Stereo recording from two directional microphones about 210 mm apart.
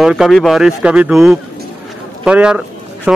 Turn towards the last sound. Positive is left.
turn(degrees=-5)  # may be behind; listen again after turning